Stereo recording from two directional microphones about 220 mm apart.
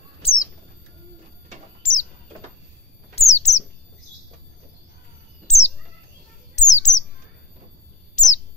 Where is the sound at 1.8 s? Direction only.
35° left (ahead or behind).